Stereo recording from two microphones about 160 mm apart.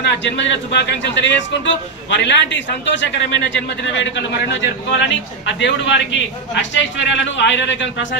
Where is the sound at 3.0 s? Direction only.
90° left.